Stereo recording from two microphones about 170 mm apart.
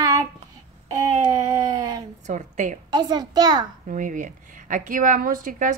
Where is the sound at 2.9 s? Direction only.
25° right (ahead or behind).